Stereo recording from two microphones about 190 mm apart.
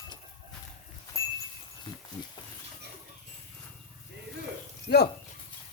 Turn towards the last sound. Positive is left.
turn(degrees=60)  # may be behind; listen again after turning